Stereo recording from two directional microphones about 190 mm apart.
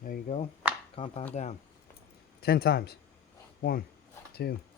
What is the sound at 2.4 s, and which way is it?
Speech, 55° left (ahead or behind).